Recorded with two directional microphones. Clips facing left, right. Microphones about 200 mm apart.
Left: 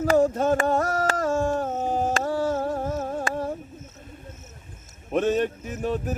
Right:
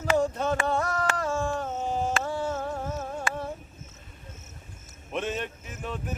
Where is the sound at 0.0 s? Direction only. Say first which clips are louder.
Left 6 dB; 40° left (ahead or behind).